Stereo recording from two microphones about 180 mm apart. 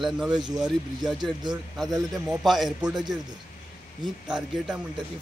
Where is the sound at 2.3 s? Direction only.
Centre (ahead or behind).